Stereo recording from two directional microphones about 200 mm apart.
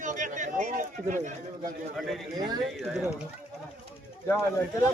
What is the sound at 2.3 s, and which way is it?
Speech, 20° right (ahead or behind).